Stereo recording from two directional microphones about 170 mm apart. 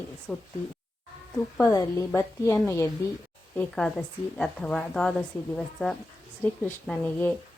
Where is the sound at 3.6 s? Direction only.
5° left (ahead or behind).